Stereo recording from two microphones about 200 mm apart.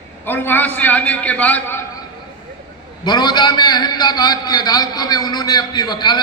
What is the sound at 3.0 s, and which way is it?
A man's voice, 20° left (ahead or behind).